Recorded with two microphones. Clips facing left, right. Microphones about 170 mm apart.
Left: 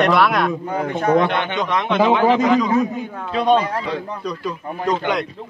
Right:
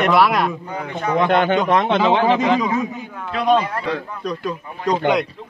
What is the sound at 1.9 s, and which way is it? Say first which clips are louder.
Speech: left 5 dB; 30° right (ahead or behind).